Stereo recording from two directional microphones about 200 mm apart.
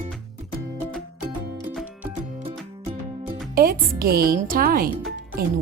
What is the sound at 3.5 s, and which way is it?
Speech, 45° right (ahead or behind).